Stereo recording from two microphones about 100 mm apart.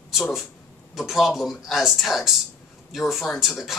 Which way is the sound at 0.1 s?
Centre (ahead or behind).